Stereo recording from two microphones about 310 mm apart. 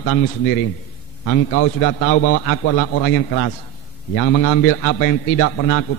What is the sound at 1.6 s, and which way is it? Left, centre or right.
A man's voice, left.